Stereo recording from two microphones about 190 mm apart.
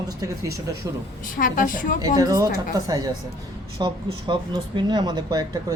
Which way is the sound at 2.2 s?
20° right (ahead or behind).